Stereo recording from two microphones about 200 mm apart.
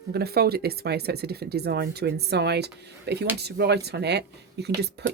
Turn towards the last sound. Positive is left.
turn(degrees=-55)  # may be behind; listen again after turning